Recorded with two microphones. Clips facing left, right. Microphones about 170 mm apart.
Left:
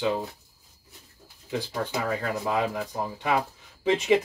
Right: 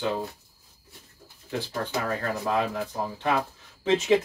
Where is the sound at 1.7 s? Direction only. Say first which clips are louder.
Even; 15° left (ahead or behind).